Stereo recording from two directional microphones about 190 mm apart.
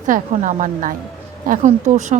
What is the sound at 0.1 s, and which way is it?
A woman's voice, 45° right (ahead or behind).